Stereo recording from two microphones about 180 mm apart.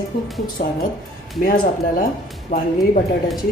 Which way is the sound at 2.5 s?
45° left (ahead or behind).